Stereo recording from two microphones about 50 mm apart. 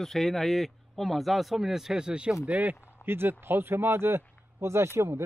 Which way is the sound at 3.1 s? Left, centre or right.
Right.